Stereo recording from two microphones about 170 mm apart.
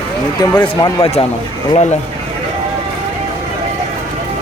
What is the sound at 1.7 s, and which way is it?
Speech, 40° left (ahead or behind).